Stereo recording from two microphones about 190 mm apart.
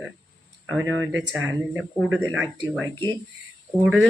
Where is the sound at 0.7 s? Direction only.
10° right (ahead or behind).